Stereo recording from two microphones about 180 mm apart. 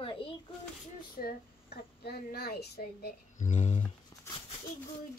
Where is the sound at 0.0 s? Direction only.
30° left (ahead or behind).